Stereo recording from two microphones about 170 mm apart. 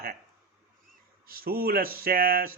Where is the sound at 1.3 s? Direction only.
60° right (ahead or behind).